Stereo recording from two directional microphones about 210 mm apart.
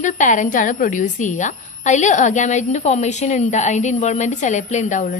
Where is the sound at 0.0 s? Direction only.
35° left (ahead or behind).